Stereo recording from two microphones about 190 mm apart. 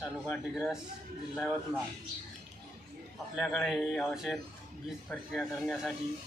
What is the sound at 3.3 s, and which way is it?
A man's voice, centre (ahead or behind).